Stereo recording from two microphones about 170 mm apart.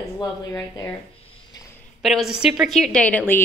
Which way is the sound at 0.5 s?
20° left (ahead or behind).